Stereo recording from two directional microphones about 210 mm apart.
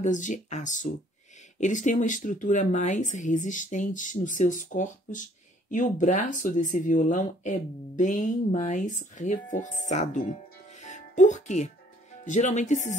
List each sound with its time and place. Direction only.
0.0 s speech: 35° left (ahead or behind)
10.8 s music: 35° left (ahead or behind)
12.3 s speech: 35° left (ahead or behind)